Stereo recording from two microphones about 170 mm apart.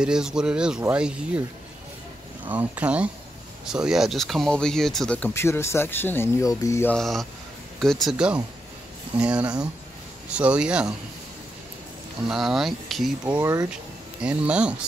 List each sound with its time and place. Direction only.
0.0 s speech: 5° right (ahead or behind)
2.4 s speech: 10° right (ahead or behind); by 6.9 s 20° left (ahead or behind)
6.9 s speech: centre (ahead or behind)
12.3 s speech: centre (ahead or behind)
13.4 s speech: 15° right (ahead or behind)
14.2 s speech: 5° right (ahead or behind)